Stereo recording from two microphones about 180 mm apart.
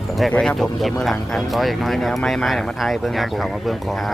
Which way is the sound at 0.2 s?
5° left (ahead or behind).